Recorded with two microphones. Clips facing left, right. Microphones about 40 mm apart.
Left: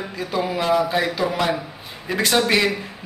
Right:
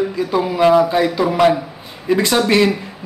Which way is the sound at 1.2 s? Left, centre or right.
Centre.